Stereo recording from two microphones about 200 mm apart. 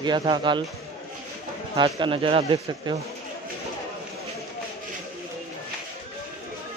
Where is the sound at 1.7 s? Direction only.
25° right (ahead or behind).